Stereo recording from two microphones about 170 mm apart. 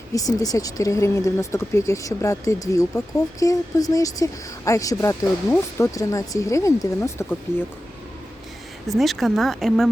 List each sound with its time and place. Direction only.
0.1 s speech: 20° left (ahead or behind)
8.9 s speech: centre (ahead or behind)